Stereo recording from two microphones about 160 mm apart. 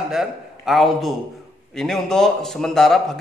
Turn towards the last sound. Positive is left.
turn(degrees=0)  # may be behind; listen again after turning